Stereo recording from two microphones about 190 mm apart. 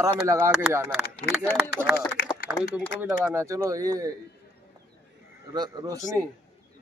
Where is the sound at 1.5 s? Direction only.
5° right (ahead or behind).